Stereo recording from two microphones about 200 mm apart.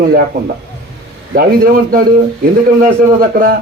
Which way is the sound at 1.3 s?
50° right (ahead or behind).